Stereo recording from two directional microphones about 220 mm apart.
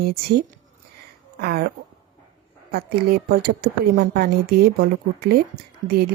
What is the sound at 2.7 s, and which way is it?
A woman's voice, 45° right (ahead or behind).